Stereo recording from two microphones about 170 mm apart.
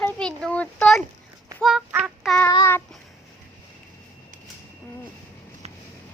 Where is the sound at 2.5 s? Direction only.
25° left (ahead or behind).